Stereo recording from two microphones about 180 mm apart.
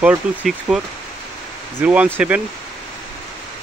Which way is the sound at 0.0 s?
5° right (ahead or behind).